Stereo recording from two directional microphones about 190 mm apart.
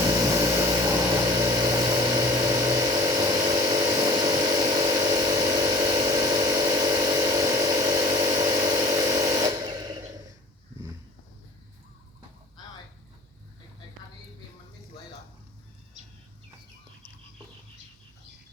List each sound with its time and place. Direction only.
0.0 s vehicle: 15° right (ahead or behind)